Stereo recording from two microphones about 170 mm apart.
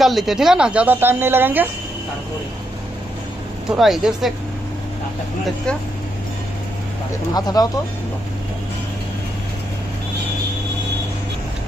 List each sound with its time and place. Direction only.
0.0 s a woman's voice: centre (ahead or behind)
3.7 s speech: centre (ahead or behind)
7.3 s speech: 25° left (ahead or behind)